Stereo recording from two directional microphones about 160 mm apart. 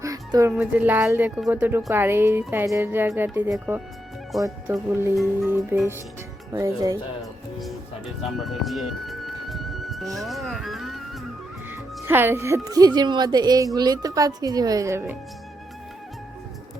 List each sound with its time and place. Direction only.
0.0 s music: 20° right (ahead or behind)
0.5 s speech: 10° right (ahead or behind)
5.1 s speech: centre (ahead or behind)
5.5 s a woman's voice: 15° right (ahead or behind)
8.4 s music: centre (ahead or behind)
11.7 s a woman's voice: 15° right (ahead or behind)